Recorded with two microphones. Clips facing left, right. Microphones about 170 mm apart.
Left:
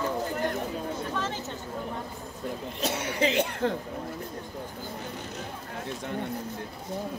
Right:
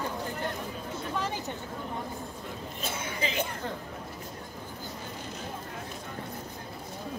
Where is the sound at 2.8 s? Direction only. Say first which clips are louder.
Left 7 dB; 75° left (ahead or behind).